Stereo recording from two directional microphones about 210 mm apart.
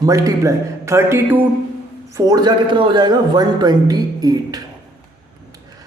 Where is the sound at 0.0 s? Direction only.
15° right (ahead or behind).